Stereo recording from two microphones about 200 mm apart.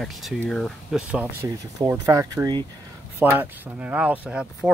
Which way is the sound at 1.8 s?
15° right (ahead or behind).